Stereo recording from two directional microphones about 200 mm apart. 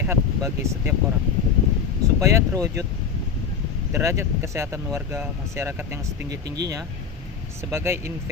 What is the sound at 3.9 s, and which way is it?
Speech, 15° right (ahead or behind).